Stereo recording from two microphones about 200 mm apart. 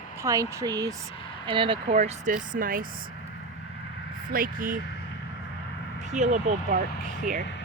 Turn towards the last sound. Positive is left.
turn(degrees=-40)  # may be behind; listen again after turning